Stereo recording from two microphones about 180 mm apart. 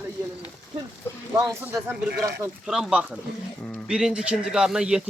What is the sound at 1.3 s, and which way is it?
Speech, 15° right (ahead or behind).